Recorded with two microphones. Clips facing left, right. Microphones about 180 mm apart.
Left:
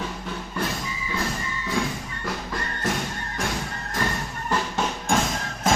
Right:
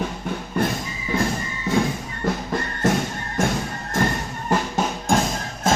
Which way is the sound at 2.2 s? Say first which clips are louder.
Right 7 dB; 50° right (ahead or behind).